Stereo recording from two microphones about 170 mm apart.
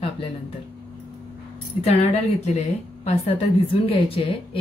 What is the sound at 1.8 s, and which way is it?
A woman's voice, 40° left (ahead or behind).